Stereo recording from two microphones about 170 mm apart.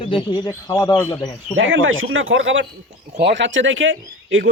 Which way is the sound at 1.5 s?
90° right.